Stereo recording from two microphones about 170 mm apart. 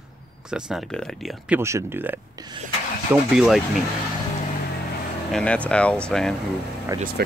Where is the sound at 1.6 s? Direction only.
15° right (ahead or behind).